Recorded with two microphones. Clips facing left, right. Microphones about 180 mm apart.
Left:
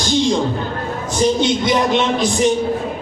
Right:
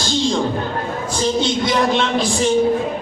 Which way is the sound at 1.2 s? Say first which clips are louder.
Left 3 dB; 20° left (ahead or behind).